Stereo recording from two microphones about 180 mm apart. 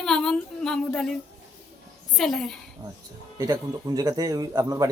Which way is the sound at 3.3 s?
20° right (ahead or behind).